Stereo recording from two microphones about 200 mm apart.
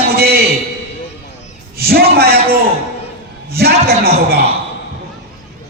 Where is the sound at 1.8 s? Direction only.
50° right (ahead or behind).